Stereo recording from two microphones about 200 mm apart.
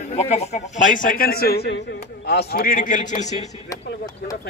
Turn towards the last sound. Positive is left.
turn(degrees=40)  # may be behind; listen again after turning